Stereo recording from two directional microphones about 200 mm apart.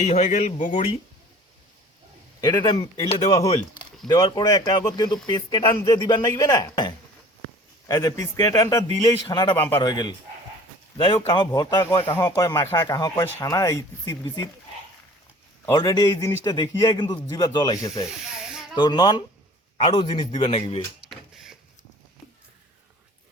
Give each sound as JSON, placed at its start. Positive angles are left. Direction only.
{"t": 0.0, "sound": "speech", "side_deg": 35}
{"t": 2.4, "sound": "a man's voice", "side_deg": 20}
{"t": 15.6, "sound": "speech", "side_deg": 15}
{"t": 18.1, "sound": "snake", "side_deg": -5}
{"t": 18.8, "sound": "speech", "side_deg": 20}
{"t": 21.1, "sound": "a sound", "side_deg": 0}